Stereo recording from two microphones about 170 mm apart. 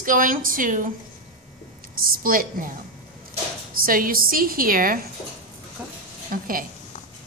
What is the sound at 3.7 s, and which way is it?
A woman's voice, 55° right (ahead or behind).